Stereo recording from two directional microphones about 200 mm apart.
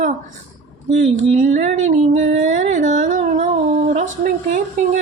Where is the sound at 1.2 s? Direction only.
40° right (ahead or behind).